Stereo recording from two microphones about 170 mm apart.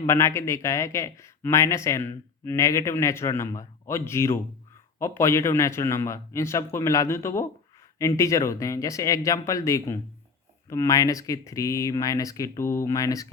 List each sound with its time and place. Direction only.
0.0 s speech: 15° left (ahead or behind)